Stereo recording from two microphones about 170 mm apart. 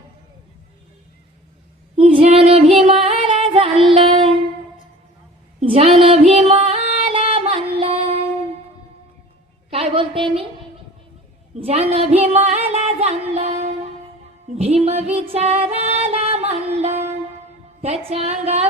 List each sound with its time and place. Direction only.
2.0 s female singing: 35° right (ahead or behind)
2.8 s music: 35° right (ahead or behind)
5.5 s female singing: 35° right (ahead or behind)
7.3 s music: 35° right (ahead or behind)
9.7 s a sound: 30° right (ahead or behind)
11.6 s a sound: 40° right (ahead or behind)
13.3 s music: 40° right (ahead or behind)
17.8 s a woman's voice: 40° right (ahead or behind)